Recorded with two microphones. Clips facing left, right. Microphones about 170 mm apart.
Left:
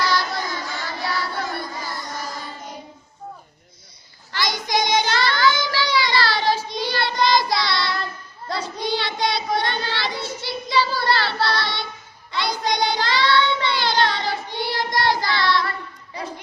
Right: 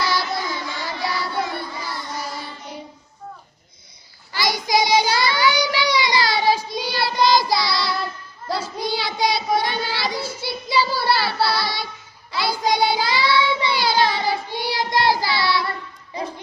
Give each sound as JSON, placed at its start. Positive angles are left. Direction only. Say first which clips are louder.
{"t": 0.2, "sound": "child singing", "louder": "right 1 dB", "side_deg": 45}
{"t": 1.8, "sound": "music", "louder": "right 1 dB", "side_deg": 45}
{"t": 4.3, "sound": "child singing", "louder": "right 3 dB", "side_deg": -10}